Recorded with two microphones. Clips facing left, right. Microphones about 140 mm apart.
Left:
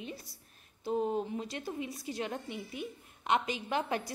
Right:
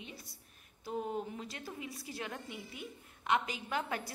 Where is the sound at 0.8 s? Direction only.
25° left (ahead or behind).